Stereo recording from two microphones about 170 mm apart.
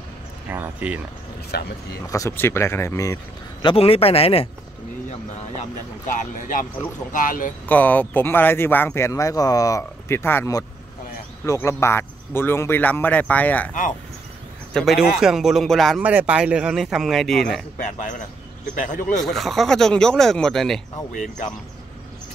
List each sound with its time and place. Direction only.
0.5 s speech: 10° right (ahead or behind)
1.5 s speech: 70° left (ahead or behind)
2.0 s speech: 20° left (ahead or behind)
3.6 s speech: 35° left (ahead or behind)
6.1 s speech: 50° left (ahead or behind)
7.6 s speech: 10° left (ahead or behind)
14.7 s speech: centre (ahead or behind)
16.0 s speech: 10° right (ahead or behind)
18.8 s speech: 50° left (ahead or behind)
19.2 s speech: centre (ahead or behind)